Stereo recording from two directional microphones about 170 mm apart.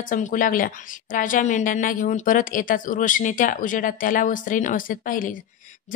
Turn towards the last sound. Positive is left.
turn(degrees=50)  # may be behind; listen again after turning